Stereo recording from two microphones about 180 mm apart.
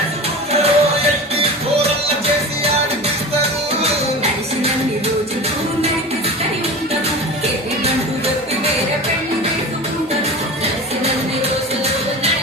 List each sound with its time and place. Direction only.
0.6 s music: 35° right (ahead or behind)
3.8 s music: 35° right (ahead or behind)